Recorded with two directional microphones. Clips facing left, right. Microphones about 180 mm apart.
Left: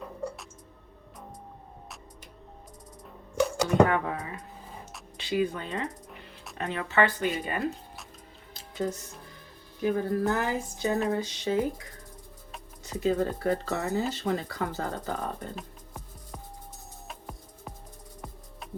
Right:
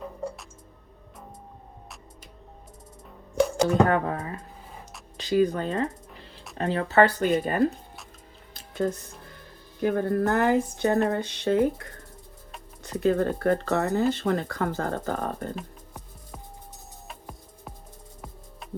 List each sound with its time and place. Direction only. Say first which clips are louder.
3.8 s speech: right 4 dB; 40° right (ahead or behind)
8.5 s music: right 4 dB; 55° right (ahead or behind)
9.8 s speech: right 3 dB; 60° right (ahead or behind)
17.1 s music: even; centre (ahead or behind)